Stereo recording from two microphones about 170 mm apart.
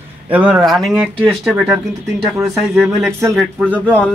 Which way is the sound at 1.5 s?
10° right (ahead or behind).